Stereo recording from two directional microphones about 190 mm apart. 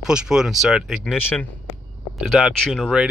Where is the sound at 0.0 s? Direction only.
5° right (ahead or behind).